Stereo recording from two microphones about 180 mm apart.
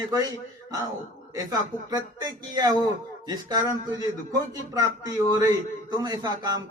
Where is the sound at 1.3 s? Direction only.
20° right (ahead or behind).